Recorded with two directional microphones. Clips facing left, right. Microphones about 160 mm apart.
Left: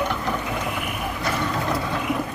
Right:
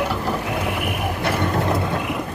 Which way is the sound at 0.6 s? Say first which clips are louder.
Right 4 dB; 65° right (ahead or behind).